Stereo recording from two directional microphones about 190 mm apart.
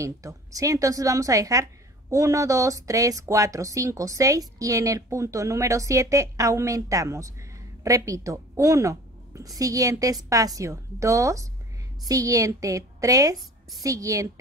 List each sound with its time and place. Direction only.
0.0 s a woman's voice: 15° right (ahead or behind)